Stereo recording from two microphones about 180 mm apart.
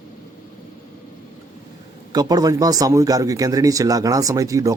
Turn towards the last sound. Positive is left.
turn(degrees=-20)  # may be behind; listen again after turning